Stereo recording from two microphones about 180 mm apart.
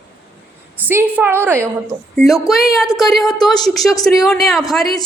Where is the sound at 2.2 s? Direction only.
Centre (ahead or behind).